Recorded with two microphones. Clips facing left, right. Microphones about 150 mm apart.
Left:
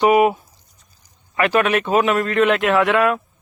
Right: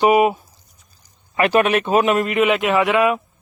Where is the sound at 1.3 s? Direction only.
25° right (ahead or behind).